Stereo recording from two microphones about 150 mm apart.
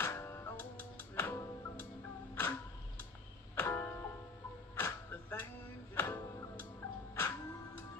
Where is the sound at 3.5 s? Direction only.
15° left (ahead or behind).